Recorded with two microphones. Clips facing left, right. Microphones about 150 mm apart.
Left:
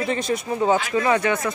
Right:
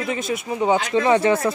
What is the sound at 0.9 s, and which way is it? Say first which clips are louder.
Speech: right 3 dB; 25° right (ahead or behind).